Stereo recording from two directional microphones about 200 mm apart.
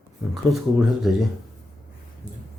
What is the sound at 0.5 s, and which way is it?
Speech, centre (ahead or behind).